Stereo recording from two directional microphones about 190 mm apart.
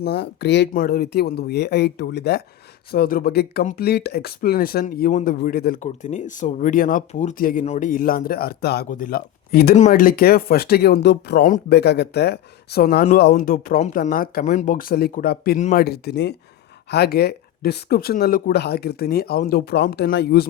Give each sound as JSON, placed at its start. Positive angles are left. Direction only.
{"t": 0.0, "sound": "speech", "side_deg": 60}
{"t": 2.9, "sound": "speech", "side_deg": 50}
{"t": 5.8, "sound": "speech", "side_deg": 40}
{"t": 8.9, "sound": "speech", "side_deg": 45}